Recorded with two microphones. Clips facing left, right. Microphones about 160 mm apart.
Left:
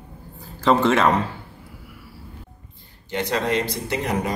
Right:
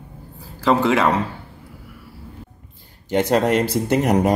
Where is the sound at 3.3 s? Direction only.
50° right (ahead or behind).